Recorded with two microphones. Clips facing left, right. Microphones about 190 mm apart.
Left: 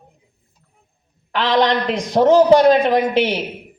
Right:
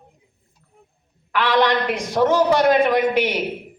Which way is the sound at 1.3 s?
35° left (ahead or behind).